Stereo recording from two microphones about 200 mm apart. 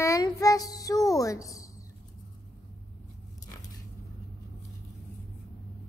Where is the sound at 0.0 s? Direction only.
15° left (ahead or behind).